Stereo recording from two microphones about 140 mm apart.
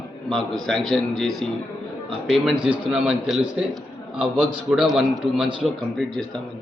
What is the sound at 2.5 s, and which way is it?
Speech, 40° right (ahead or behind).